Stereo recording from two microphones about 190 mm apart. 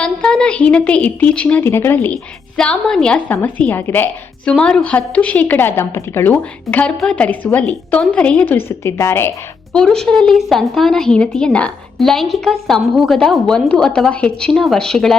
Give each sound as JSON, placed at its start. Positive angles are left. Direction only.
{"t": 0.0, "sound": "a woman's voice", "side_deg": 5}
{"t": 9.7, "sound": "speech", "side_deg": 5}